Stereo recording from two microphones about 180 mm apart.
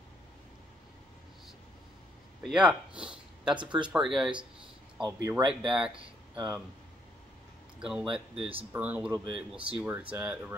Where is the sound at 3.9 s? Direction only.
5° right (ahead or behind).